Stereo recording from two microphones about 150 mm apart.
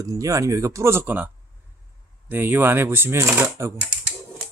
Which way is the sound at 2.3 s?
15° right (ahead or behind).